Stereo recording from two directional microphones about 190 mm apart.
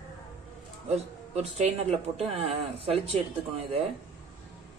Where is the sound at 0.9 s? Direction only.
35° right (ahead or behind).